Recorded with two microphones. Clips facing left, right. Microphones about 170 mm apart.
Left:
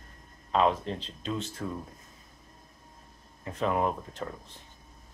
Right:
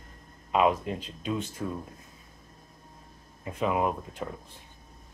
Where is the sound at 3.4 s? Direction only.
10° right (ahead or behind).